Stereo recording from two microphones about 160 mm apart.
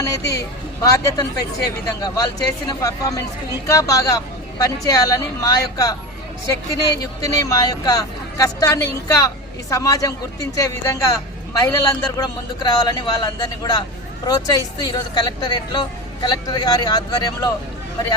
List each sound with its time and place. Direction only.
0.0 s speech: 20° left (ahead or behind)